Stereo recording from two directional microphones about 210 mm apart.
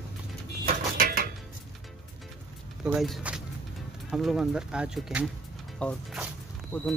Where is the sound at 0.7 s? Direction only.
45° right (ahead or behind).